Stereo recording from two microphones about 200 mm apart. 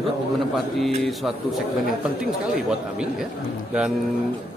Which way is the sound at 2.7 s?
5° right (ahead or behind).